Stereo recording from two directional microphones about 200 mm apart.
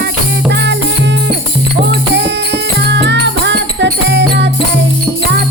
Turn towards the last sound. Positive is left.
turn(degrees=-60)  # may be behind; listen again after turning